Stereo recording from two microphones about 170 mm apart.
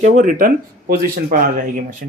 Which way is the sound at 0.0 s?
50° right (ahead or behind).